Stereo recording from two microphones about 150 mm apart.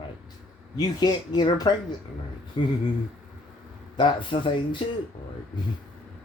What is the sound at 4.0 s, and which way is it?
Speech, 30° left (ahead or behind).